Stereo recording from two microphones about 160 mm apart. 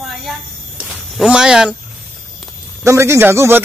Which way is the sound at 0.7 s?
5° right (ahead or behind).